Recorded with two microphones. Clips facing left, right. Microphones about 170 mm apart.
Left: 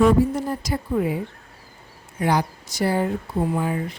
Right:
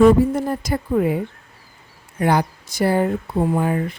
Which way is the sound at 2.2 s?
55° right (ahead or behind).